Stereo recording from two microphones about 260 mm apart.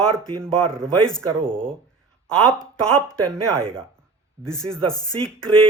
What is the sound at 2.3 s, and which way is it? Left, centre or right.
Speech, centre.